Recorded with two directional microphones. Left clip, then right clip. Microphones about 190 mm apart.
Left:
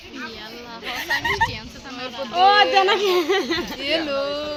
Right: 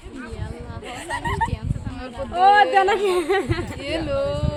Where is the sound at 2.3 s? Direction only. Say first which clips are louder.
Even; 40° left (ahead or behind).